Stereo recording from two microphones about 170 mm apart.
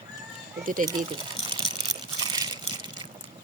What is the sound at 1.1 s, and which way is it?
Speech, 25° right (ahead or behind).